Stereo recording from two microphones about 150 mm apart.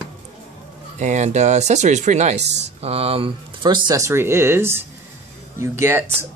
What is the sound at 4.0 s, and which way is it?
Speech, 15° right (ahead or behind).